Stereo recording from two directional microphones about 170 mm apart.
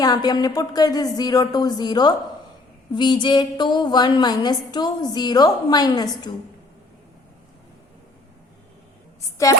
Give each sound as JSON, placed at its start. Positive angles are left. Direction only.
{"t": 0.0, "sound": "a woman's voice", "side_deg": 25}
{"t": 9.4, "sound": "a woman's voice", "side_deg": 20}